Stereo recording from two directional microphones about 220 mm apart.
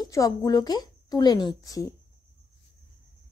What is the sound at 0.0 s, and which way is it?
A woman's voice, 15° left (ahead or behind).